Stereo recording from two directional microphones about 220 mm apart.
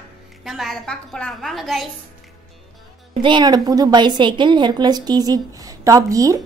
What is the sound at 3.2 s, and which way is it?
A woman's voice, 20° right (ahead or behind).